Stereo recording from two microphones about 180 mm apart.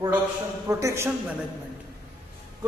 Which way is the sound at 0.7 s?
15° right (ahead or behind).